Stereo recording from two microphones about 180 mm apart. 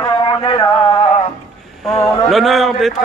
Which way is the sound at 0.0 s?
25° left (ahead or behind).